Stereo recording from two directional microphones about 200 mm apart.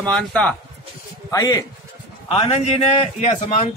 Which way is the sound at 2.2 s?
30° left (ahead or behind).